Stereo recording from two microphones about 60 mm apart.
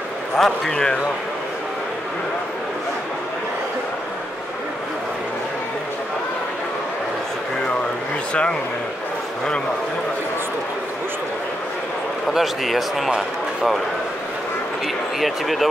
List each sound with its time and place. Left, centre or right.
0.4 s speech: centre
8.3 s speech: centre
12.3 s speech: centre
15.1 s speech: centre